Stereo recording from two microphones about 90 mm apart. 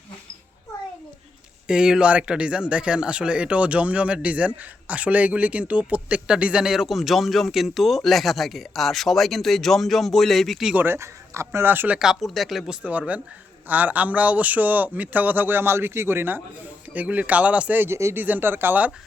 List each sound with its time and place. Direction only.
1.6 s speech: 10° right (ahead or behind)
10.8 s a man's voice: 30° right (ahead or behind)
11.9 s a man's voice: 5° right (ahead or behind); by 17.9 s 20° right (ahead or behind)
17.9 s speech: 30° right (ahead or behind)
18.2 s a man's voice: 20° right (ahead or behind)